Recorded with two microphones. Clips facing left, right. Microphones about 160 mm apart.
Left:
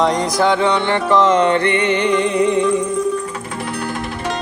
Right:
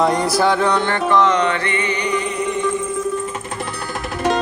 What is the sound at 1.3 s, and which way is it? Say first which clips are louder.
Music: left 4 dB; 50° left (ahead or behind).